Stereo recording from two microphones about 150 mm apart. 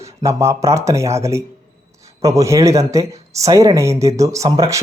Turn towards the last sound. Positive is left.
turn(degrees=-20)  # may be behind; listen again after turning